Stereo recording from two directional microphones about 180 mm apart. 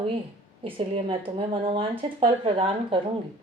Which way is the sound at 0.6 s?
30° right (ahead or behind).